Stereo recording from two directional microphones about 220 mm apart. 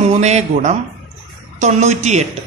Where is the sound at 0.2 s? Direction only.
30° right (ahead or behind).